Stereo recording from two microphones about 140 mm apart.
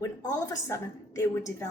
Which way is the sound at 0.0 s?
25° left (ahead or behind).